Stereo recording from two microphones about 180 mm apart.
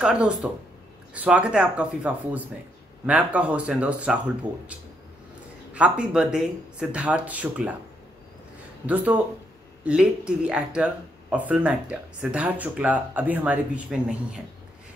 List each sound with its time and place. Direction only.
0.0 s speech: 5° right (ahead or behind)
8.8 s speech: 10° right (ahead or behind)